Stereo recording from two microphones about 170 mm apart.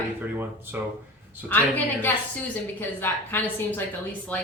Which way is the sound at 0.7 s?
10° right (ahead or behind).